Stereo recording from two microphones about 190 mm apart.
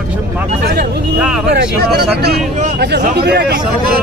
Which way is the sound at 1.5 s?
55° right (ahead or behind).